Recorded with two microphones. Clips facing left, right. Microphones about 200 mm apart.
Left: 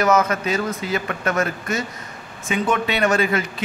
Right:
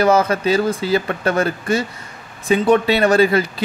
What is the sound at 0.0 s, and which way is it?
Speech, 30° right (ahead or behind).